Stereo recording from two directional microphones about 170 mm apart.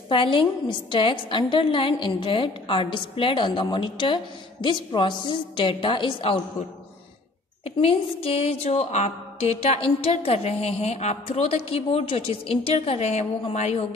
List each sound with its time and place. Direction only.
0.1 s a woman's voice: 30° left (ahead or behind)
7.6 s music: 35° left (ahead or behind)